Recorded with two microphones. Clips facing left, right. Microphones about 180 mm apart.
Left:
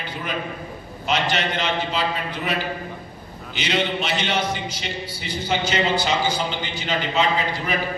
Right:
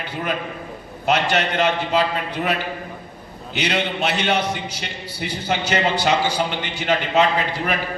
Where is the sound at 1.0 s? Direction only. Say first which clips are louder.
Right 4 dB; 60° right (ahead or behind).